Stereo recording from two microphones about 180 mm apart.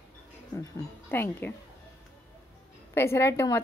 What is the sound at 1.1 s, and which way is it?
Speech, 10° left (ahead or behind).